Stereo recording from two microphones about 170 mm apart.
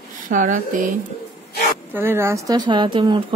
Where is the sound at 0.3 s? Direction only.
50° right (ahead or behind).